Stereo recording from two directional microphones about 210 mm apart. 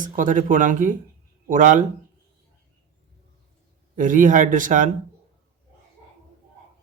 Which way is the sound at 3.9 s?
40° right (ahead or behind).